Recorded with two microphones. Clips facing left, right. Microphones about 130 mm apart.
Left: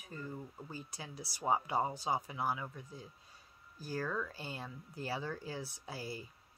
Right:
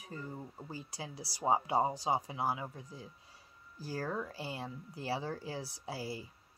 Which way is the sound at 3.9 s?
30° right (ahead or behind).